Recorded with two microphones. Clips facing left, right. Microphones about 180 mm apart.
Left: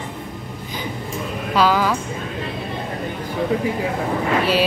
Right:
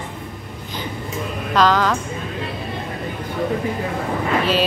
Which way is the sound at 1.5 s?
10° left (ahead or behind).